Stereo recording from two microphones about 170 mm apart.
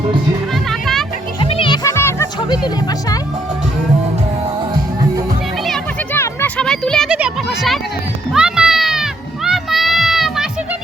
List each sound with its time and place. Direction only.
0.7 s music: centre (ahead or behind)
1.4 s music: 30° left (ahead or behind); by 2.2 s 15° left (ahead or behind)
6.1 s a sound: 10° left (ahead or behind)
8.3 s music: 5° right (ahead or behind)